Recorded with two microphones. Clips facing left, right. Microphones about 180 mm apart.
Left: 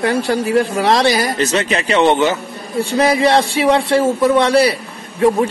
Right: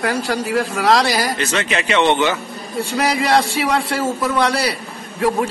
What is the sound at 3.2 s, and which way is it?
A man's voice, 25° left (ahead or behind).